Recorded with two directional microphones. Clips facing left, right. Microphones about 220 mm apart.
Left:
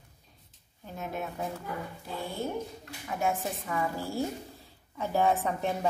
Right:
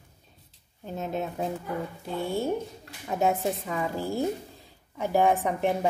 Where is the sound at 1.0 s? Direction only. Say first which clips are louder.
Right 5 dB; 25° right (ahead or behind).